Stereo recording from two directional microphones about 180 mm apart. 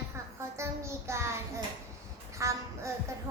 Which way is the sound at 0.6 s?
15° right (ahead or behind).